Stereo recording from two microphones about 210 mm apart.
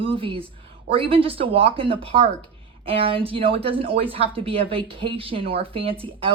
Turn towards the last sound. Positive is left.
turn(degrees=-25)  # may be behind; listen again after turning